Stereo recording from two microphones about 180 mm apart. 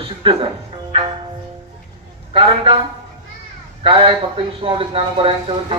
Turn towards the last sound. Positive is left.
turn(degrees=-30)  # may be behind; listen again after turning